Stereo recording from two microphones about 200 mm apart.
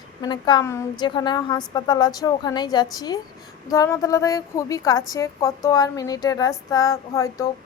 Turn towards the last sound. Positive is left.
turn(degrees=15)  # may be behind; listen again after turning